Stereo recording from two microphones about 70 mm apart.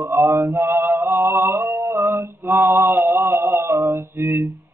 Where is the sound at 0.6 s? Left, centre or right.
Right.